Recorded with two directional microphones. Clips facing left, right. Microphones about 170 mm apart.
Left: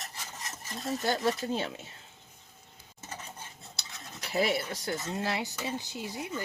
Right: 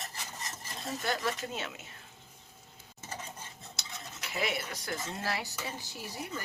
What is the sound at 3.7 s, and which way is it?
Stir, 35° left (ahead or behind).